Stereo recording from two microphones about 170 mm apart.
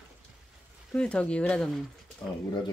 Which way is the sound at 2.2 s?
20° left (ahead or behind).